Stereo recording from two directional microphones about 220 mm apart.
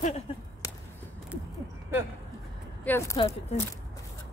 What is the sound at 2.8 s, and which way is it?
Speech, 10° left (ahead or behind).